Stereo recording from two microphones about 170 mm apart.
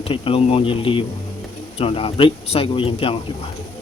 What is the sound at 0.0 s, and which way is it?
Speech, 35° left (ahead or behind).